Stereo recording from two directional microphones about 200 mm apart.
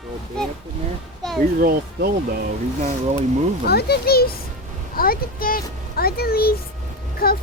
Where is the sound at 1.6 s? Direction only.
50° right (ahead or behind).